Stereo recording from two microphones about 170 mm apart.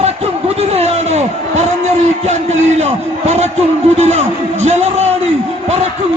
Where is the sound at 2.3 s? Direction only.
40° right (ahead or behind).